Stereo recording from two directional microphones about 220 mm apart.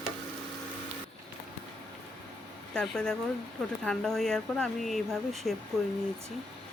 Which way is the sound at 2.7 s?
5° left (ahead or behind).